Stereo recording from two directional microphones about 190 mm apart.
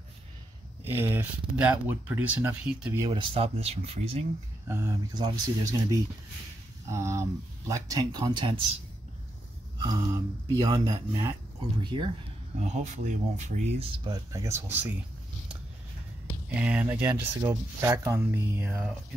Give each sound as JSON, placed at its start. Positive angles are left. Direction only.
{"t": 0.8, "sound": "speech", "side_deg": -10}
{"t": 3.0, "sound": "speech", "side_deg": -25}
{"t": 4.6, "sound": "speech", "side_deg": -15}
{"t": 9.8, "sound": "speech", "side_deg": -20}
{"t": 12.5, "sound": "speech", "side_deg": -35}
{"t": 13.9, "sound": "speech", "side_deg": -20}
{"t": 16.4, "sound": "speech", "side_deg": -5}